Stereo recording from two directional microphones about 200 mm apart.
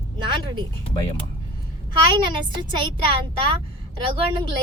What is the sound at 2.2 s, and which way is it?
Speech, 25° right (ahead or behind).